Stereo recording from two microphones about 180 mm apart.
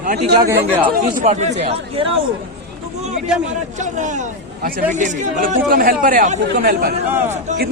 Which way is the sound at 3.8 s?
40° right (ahead or behind).